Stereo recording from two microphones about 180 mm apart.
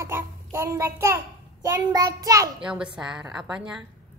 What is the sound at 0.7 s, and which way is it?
A woman's voice, 15° right (ahead or behind).